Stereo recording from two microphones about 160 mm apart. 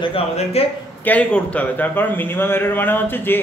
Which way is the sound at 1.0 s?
10° left (ahead or behind).